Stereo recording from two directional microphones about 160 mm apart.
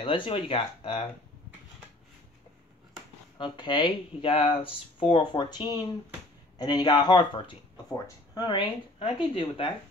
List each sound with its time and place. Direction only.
0.0 s speech: 35° left (ahead or behind)
3.3 s speech: 30° left (ahead or behind)